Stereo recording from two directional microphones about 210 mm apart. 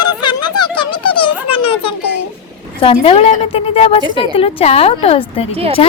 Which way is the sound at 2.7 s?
25° left (ahead or behind).